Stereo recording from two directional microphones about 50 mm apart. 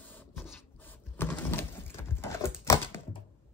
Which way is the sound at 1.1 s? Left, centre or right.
Left.